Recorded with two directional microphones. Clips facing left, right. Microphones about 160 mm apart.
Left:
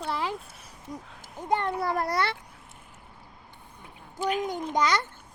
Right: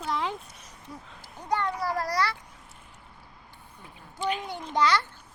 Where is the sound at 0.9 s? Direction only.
20° left (ahead or behind).